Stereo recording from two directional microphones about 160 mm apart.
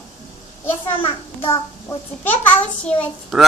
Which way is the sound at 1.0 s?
35° left (ahead or behind).